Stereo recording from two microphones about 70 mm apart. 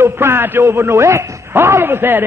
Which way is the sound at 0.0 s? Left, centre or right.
Right.